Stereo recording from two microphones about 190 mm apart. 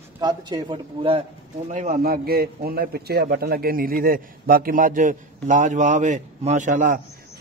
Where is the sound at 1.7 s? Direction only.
45° right (ahead or behind).